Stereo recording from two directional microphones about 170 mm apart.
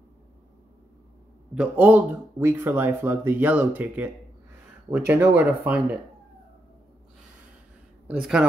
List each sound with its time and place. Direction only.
1.5 s speech: 10° right (ahead or behind)
8.1 s a man's voice: 5° right (ahead or behind)